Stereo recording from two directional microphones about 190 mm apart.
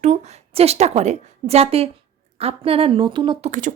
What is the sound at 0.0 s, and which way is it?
Speech, 35° right (ahead or behind).